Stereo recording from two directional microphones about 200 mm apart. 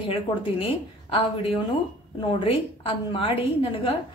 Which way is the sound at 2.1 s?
25° left (ahead or behind).